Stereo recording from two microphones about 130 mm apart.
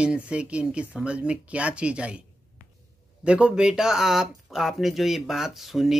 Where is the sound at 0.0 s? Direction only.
10° right (ahead or behind).